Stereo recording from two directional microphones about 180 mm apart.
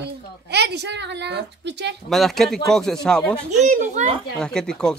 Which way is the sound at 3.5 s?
40° right (ahead or behind).